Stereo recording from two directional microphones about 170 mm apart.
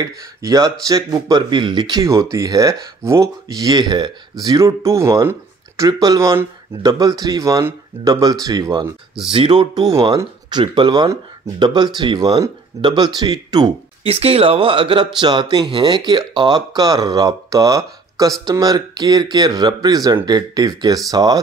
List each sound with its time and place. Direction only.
0.0 s speech: 20° right (ahead or behind)
9.3 s speech: 30° right (ahead or behind)
14.0 s speech: 35° right (ahead or behind)